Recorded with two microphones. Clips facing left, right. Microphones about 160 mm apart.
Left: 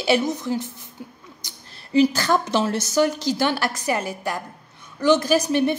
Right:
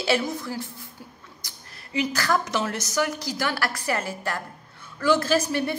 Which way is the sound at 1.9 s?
30° left (ahead or behind).